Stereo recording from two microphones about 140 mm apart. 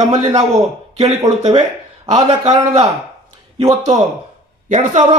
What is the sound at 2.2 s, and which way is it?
Speech, 45° right (ahead or behind).